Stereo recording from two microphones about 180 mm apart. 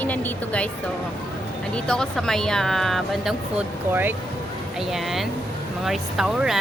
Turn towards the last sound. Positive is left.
turn(degrees=0)  # may be behind; listen again after turning